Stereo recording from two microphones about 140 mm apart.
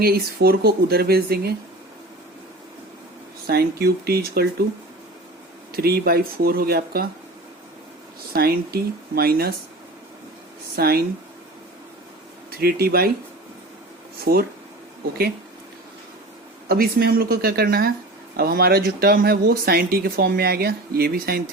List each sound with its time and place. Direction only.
0.0 s speech: 90° right
3.4 s speech: 90° right
5.7 s speech: 90° right
8.3 s speech: 90° right
10.8 s speech: 90° right
12.5 s speech: 90° right
14.3 s speech: 90° right
16.6 s speech: 90° right